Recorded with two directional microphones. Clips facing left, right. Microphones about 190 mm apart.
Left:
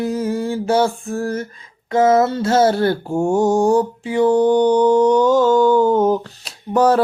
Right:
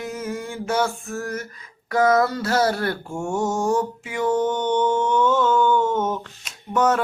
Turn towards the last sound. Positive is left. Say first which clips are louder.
# left 5 dB
turn(degrees=35)  # may be behind; listen again after turning